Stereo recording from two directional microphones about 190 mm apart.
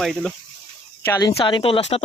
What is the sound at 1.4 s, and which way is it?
Speech, 25° left (ahead or behind).